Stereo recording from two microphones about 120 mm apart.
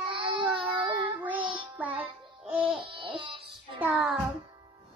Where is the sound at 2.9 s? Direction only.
45° right (ahead or behind).